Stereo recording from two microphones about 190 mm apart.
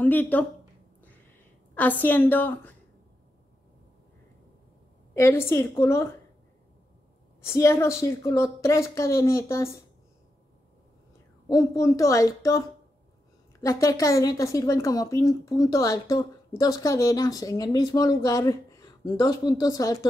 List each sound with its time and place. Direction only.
0.0 s a woman's voice: 10° left (ahead or behind)
1.8 s a woman's voice: 10° left (ahead or behind)
5.1 s a woman's voice: 15° left (ahead or behind)
7.4 s a woman's voice: 15° left (ahead or behind)
11.4 s a woman's voice: 15° left (ahead or behind)
13.6 s a woman's voice: 15° left (ahead or behind)